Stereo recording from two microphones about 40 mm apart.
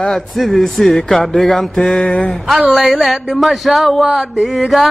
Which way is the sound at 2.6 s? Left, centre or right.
Centre.